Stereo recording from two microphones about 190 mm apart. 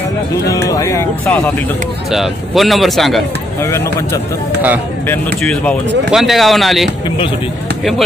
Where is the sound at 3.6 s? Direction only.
15° left (ahead or behind).